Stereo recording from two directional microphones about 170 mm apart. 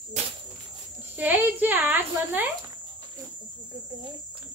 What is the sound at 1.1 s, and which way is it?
A woman's voice, 10° right (ahead or behind).